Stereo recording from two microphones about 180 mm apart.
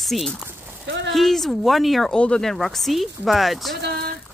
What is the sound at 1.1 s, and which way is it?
Speech, centre (ahead or behind).